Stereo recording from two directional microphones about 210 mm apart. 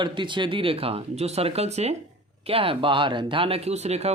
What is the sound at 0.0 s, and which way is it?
Speech, 20° right (ahead or behind).